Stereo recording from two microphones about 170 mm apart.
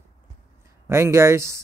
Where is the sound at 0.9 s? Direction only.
15° right (ahead or behind).